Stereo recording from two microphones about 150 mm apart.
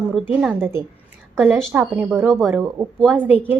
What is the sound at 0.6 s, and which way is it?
Speech, 15° right (ahead or behind).